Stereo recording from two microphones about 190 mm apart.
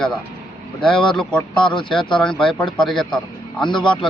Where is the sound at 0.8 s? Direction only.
5° left (ahead or behind).